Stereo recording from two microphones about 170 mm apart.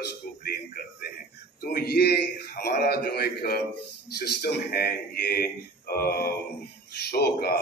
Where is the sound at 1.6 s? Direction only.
65° left (ahead or behind).